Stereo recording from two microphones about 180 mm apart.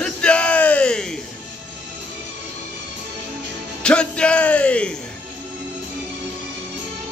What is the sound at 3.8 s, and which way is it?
Speech, 5° left (ahead or behind).